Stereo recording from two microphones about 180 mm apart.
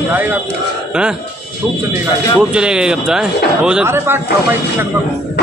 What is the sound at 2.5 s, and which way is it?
A man's voice, 5° right (ahead or behind).